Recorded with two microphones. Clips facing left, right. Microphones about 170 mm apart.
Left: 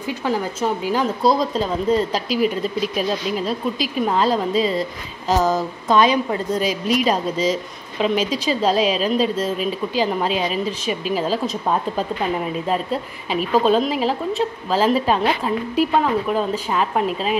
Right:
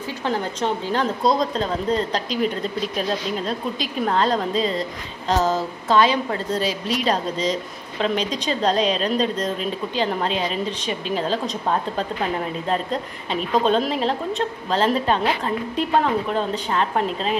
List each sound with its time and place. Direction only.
0.2 s a woman's voice: 10° left (ahead or behind)
12.6 s a woman's voice: 10° left (ahead or behind)